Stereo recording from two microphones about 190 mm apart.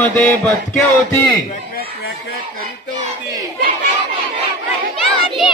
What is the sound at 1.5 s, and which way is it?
Speech, 50° left (ahead or behind).